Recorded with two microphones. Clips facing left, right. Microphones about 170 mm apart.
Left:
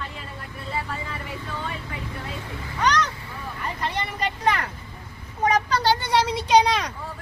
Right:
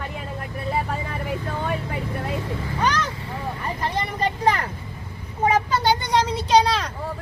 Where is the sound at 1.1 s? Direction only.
55° right (ahead or behind).